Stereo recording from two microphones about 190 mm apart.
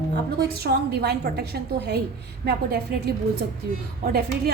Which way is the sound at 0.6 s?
55° right (ahead or behind).